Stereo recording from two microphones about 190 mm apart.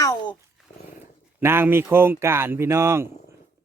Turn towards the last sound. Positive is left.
turn(degrees=-15)  # may be behind; listen again after turning